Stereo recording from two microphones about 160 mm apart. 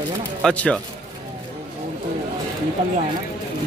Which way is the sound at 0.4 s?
5° left (ahead or behind).